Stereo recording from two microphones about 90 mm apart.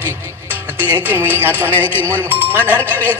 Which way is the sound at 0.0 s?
20° left (ahead or behind).